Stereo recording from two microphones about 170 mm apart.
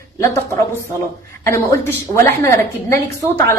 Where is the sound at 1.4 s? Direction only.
15° left (ahead or behind).